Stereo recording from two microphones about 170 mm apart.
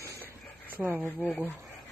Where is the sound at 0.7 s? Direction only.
10° right (ahead or behind).